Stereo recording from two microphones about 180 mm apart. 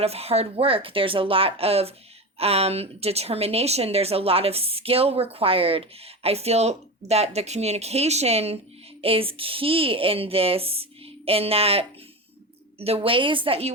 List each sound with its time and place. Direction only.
0.0 s speech: 35° right (ahead or behind)